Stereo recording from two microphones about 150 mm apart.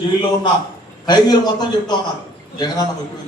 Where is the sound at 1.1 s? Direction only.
30° left (ahead or behind).